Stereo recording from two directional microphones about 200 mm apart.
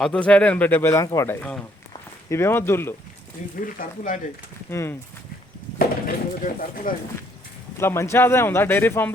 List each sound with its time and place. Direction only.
0.0 s a man's voice: 5° left (ahead or behind)
3.5 s speech: 40° left (ahead or behind)
4.7 s a man's voice: 15° left (ahead or behind)
6.1 s speech: 45° left (ahead or behind)
7.8 s a man's voice: 15° left (ahead or behind)